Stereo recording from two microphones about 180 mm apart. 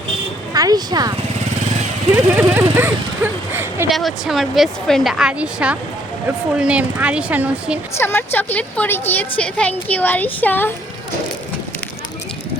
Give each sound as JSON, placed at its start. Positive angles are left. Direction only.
{"t": 0.5, "sound": "speech", "side_deg": -20}
{"t": 2.3, "sound": "speech", "side_deg": -10}
{"t": 3.8, "sound": "speech", "side_deg": 0}
{"t": 7.9, "sound": "a woman's voice", "side_deg": 10}